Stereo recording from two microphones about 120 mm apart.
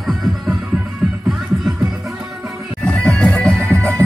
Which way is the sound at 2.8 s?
5° left (ahead or behind).